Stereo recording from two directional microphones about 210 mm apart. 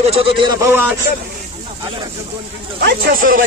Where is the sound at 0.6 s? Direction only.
10° right (ahead or behind).